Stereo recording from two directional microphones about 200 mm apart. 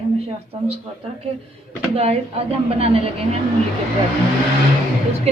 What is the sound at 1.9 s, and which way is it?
A man's voice, 30° right (ahead or behind).